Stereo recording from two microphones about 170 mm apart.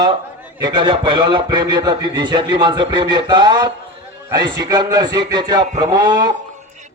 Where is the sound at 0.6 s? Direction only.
25° right (ahead or behind).